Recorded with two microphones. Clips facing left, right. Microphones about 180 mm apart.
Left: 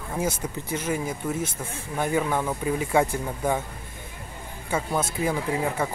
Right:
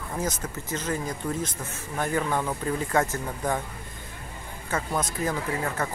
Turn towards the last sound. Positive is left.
turn(degrees=10)  # may be behind; listen again after turning